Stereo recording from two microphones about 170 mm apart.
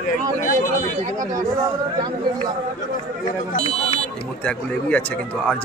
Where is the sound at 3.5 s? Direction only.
35° left (ahead or behind).